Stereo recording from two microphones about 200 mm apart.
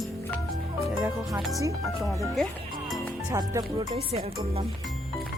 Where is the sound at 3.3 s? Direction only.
15° right (ahead or behind).